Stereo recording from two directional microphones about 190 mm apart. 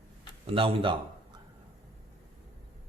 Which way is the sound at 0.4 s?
30° right (ahead or behind).